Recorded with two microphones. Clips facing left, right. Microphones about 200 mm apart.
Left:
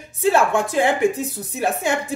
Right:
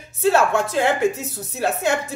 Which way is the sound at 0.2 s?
15° left (ahead or behind).